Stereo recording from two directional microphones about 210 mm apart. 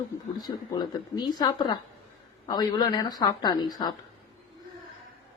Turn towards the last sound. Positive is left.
turn(degrees=20)  # may be behind; listen again after turning